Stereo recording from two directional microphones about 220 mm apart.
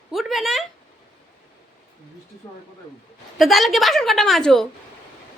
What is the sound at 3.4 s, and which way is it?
Speech, centre (ahead or behind).